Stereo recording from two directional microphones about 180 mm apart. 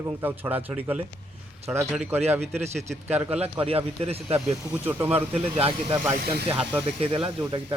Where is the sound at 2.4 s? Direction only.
35° right (ahead or behind).